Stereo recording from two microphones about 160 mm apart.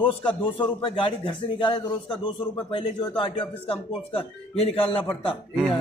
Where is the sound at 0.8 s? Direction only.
35° left (ahead or behind).